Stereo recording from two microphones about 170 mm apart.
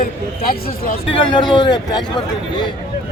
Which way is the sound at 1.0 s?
30° left (ahead or behind).